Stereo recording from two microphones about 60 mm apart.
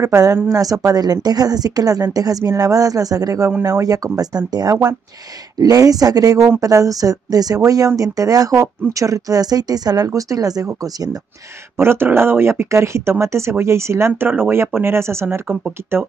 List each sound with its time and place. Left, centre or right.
0.1 s speech: right
8.8 s speech: right
11.7 s speech: right